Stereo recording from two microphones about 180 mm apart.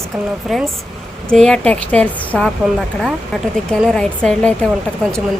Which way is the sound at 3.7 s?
5° left (ahead or behind).